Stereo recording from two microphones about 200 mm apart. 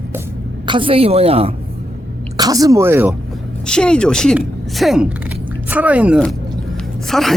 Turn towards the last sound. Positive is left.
turn(degrees=0)  # may be behind; listen again after turning